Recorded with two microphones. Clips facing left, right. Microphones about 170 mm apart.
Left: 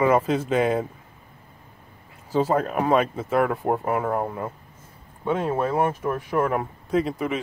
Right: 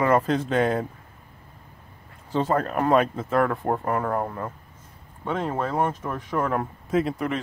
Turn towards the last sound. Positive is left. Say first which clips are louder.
# left 1 dB
turn(degrees=0)  # may be behind; listen again after turning